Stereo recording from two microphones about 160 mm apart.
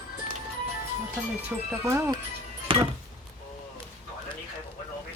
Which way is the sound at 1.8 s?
15° right (ahead or behind).